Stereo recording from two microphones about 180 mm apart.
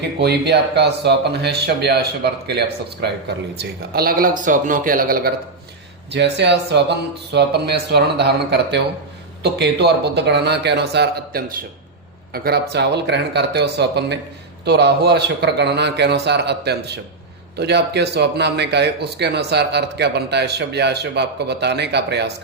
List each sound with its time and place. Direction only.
0.2 s speech: 70° right (ahead or behind)
6.1 s speech: 70° right (ahead or behind)